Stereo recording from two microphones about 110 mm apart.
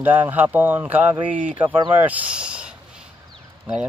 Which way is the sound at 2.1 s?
10° right (ahead or behind).